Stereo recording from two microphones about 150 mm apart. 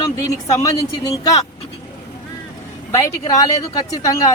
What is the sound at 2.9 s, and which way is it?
Speech, 25° left (ahead or behind).